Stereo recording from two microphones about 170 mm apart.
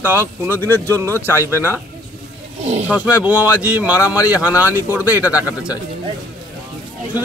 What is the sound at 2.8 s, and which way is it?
A man's voice, 10° right (ahead or behind).